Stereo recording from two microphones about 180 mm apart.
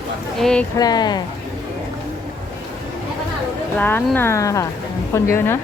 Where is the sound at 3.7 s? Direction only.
10° left (ahead or behind).